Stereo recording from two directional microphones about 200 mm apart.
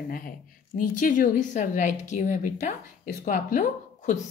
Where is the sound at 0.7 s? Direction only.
45° left (ahead or behind).